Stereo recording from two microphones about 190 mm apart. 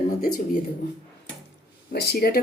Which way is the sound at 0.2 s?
50° left (ahead or behind).